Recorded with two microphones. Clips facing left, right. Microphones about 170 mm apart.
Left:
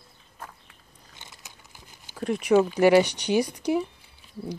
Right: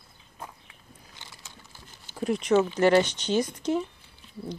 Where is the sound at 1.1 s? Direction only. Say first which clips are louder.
Left 2 dB; 15° left (ahead or behind).